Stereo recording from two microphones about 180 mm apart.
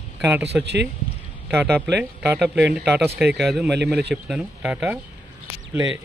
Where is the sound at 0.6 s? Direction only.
70° right (ahead or behind).